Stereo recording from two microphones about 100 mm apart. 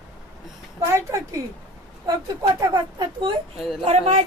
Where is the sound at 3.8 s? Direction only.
90° right.